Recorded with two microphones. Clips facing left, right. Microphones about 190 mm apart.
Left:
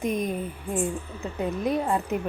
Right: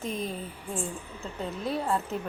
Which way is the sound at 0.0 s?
15° left (ahead or behind).